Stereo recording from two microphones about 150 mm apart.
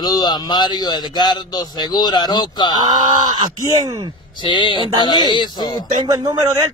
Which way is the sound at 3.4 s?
25° right (ahead or behind).